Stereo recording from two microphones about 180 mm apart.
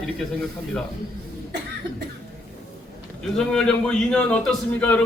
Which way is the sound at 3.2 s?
5° left (ahead or behind).